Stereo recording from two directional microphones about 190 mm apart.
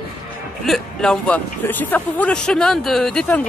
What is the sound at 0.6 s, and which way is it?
Speech, centre (ahead or behind).